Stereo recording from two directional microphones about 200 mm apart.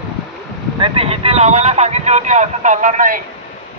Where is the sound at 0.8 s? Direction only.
30° right (ahead or behind).